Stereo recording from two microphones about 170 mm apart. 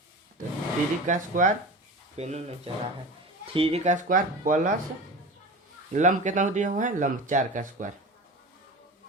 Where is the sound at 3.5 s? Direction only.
35° right (ahead or behind); by 4.7 s 50° right (ahead or behind).